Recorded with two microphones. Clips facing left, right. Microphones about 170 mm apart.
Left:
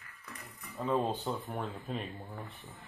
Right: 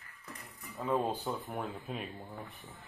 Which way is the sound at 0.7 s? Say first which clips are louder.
Left 1 dB; 10° right (ahead or behind).